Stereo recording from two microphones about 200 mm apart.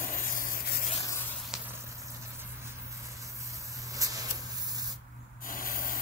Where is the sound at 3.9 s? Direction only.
15° right (ahead or behind).